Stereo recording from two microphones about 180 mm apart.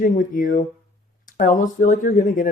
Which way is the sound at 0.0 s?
50° left (ahead or behind).